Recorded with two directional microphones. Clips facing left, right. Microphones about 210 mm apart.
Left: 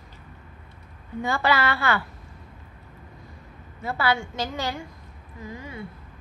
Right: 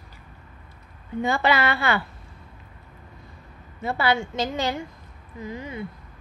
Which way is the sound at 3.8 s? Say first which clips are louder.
Right 2 dB; 20° right (ahead or behind).